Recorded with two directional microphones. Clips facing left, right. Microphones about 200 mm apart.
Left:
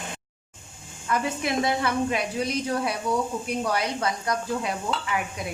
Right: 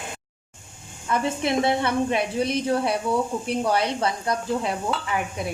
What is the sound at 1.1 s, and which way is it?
A woman's voice, 25° right (ahead or behind).